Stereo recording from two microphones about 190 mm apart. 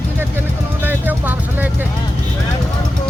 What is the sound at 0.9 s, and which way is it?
Vehicle, 10° right (ahead or behind).